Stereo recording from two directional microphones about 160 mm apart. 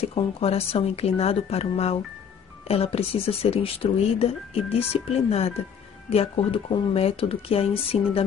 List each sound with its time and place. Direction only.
0.0 s speech: 40° left (ahead or behind)